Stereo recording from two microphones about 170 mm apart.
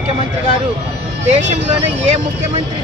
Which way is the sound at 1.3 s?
40° right (ahead or behind).